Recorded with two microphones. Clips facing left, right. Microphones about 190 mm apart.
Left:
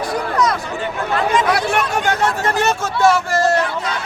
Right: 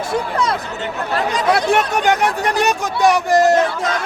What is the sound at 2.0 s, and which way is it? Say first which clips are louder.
Speech: right 2 dB; 15° right (ahead or behind).